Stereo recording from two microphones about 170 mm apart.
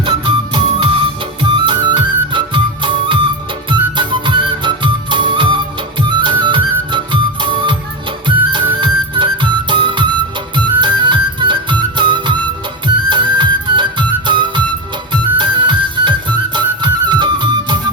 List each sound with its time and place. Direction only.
0.0 s music: 30° right (ahead or behind)